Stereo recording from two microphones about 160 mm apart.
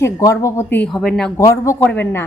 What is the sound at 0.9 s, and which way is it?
Speech, centre (ahead or behind).